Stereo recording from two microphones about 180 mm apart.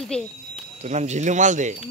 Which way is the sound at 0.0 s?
5° left (ahead or behind).